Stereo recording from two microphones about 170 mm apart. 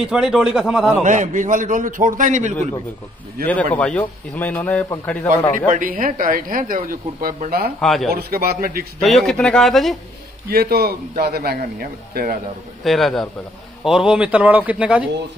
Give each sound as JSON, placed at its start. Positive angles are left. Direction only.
{"t": 0.0, "sound": "a man's voice", "side_deg": -5}
{"t": 1.0, "sound": "a man's voice", "side_deg": -45}
{"t": 3.7, "sound": "a man's voice", "side_deg": 10}
{"t": 5.7, "sound": "speech", "side_deg": -55}
{"t": 7.8, "sound": "a man's voice", "side_deg": 0}
{"t": 8.1, "sound": "speech", "side_deg": -65}
{"t": 9.0, "sound": "a man's voice", "side_deg": 0}
{"t": 10.5, "sound": "a man's voice", "side_deg": -65}
{"t": 12.8, "sound": "a man's voice", "side_deg": 0}